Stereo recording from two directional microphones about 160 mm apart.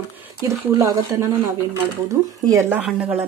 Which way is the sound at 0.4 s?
20° right (ahead or behind).